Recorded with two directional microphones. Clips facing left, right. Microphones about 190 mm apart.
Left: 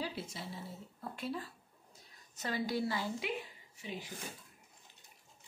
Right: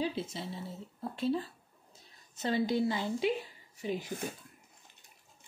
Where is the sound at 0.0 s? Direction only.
25° right (ahead or behind).